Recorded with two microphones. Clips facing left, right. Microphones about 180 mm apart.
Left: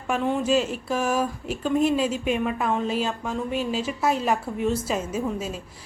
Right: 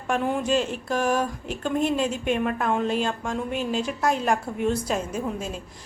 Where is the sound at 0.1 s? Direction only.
5° right (ahead or behind).